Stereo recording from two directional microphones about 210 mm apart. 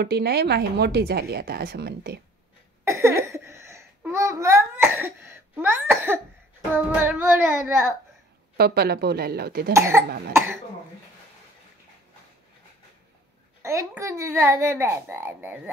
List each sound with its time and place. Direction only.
0.0 s a woman's voice: 50° right (ahead or behind)
2.8 s babbling: 15° right (ahead or behind)
6.7 s croak: 10° right (ahead or behind)
8.5 s a woman's voice: 50° right (ahead or behind)
9.8 s croak: 10° right (ahead or behind)
13.6 s croak: 15° right (ahead or behind)